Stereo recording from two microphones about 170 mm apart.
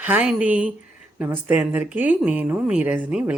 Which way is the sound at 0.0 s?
10° right (ahead or behind).